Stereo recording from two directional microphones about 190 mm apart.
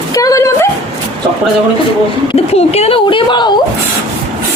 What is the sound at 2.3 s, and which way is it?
Speech, 35° left (ahead or behind).